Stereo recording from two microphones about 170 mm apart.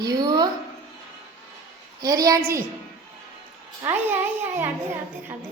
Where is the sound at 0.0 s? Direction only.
25° right (ahead or behind).